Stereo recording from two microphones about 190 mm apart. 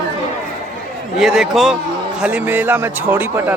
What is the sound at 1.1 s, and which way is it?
A woman's voice, centre (ahead or behind).